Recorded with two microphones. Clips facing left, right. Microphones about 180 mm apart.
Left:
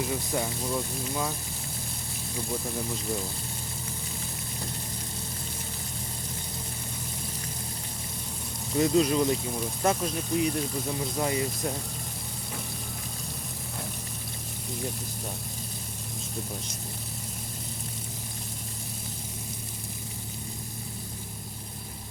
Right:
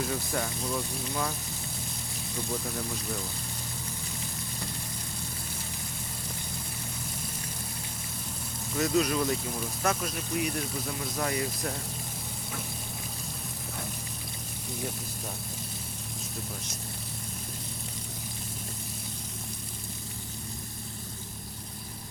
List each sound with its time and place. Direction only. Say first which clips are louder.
0.0 s speech: left 2 dB; 15° left (ahead or behind)
2.5 s speech: left 2 dB; 15° left (ahead or behind)
8.7 s speech: left 4 dB; 25° left (ahead or behind)